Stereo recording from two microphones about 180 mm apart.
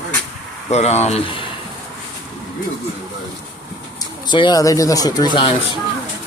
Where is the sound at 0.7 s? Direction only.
40° left (ahead or behind).